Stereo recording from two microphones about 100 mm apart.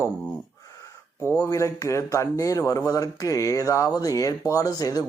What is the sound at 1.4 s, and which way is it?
A man's voice, 35° left (ahead or behind).